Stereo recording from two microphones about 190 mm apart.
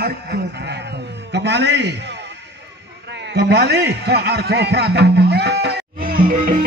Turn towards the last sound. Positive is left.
turn(degrees=-50)  # may be behind; listen again after turning